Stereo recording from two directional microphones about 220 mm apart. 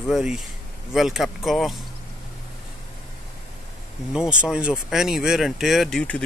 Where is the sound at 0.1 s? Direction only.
Centre (ahead or behind).